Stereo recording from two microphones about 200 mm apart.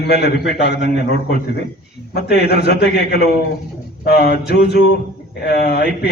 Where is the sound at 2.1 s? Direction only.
55° left (ahead or behind).